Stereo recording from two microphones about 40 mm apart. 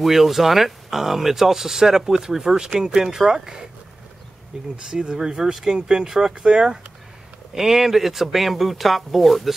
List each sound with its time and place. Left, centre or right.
0.0 s speech: centre
4.7 s speech: centre